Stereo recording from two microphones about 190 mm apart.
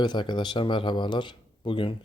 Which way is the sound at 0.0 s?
25° left (ahead or behind).